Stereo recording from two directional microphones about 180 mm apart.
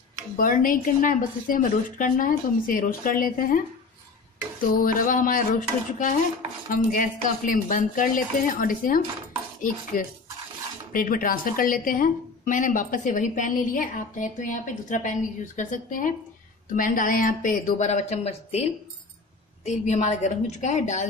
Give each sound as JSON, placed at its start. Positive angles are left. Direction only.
{"t": 0.4, "sound": "a woman's voice", "side_deg": 50}